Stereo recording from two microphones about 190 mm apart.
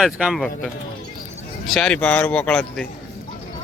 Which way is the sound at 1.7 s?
5° left (ahead or behind).